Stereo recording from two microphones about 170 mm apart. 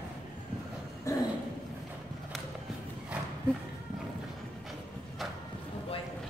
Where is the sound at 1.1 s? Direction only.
20° left (ahead or behind).